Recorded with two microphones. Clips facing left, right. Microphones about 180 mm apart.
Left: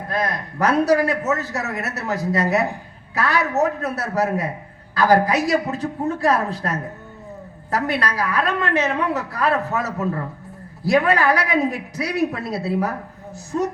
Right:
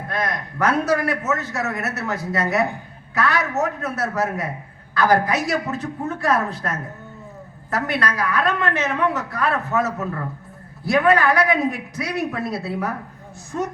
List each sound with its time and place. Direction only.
0.1 s a man's voice: 35° left (ahead or behind)